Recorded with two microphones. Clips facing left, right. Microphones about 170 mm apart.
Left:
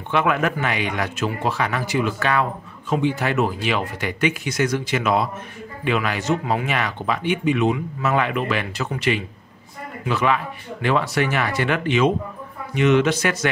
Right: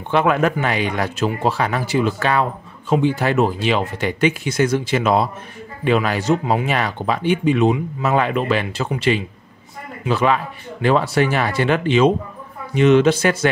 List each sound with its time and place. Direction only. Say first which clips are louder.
0.1 s speech: right 4 dB; 30° right (ahead or behind)